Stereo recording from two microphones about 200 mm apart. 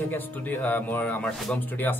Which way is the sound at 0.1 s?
10° left (ahead or behind).